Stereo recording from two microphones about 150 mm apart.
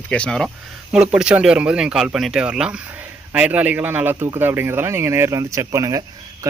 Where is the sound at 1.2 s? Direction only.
5° right (ahead or behind).